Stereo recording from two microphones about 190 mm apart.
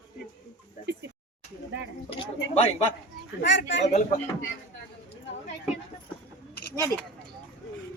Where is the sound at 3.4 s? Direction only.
65° left (ahead or behind).